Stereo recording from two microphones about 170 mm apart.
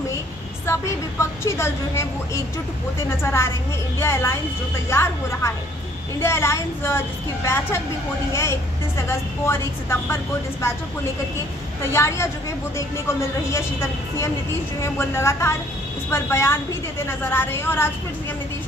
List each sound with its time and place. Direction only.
0.7 s a woman's voice: 15° left (ahead or behind)
4.0 s a woman's voice: 15° left (ahead or behind)
11.8 s a woman's voice: 15° left (ahead or behind)
13.5 s a woman's voice: 15° left (ahead or behind)